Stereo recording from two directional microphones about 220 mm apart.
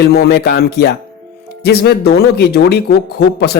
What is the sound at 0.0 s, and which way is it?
Speech, 45° left (ahead or behind).